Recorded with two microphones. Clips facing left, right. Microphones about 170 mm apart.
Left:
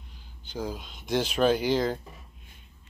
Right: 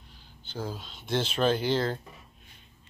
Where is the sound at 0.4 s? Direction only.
15° left (ahead or behind).